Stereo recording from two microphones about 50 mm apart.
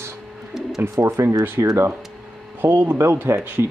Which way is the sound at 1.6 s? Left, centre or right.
Right.